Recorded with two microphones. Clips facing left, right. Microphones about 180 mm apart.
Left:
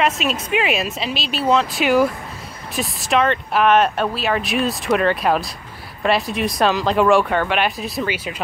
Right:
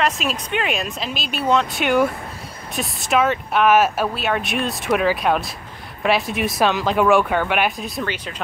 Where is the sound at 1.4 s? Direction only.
Centre (ahead or behind).